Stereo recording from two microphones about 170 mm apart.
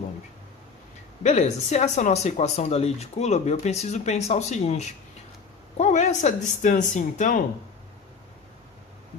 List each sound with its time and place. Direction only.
1.2 s speech: 40° left (ahead or behind)